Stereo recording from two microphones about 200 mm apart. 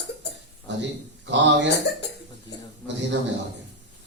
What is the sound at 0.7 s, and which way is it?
A man's voice, 60° right (ahead or behind).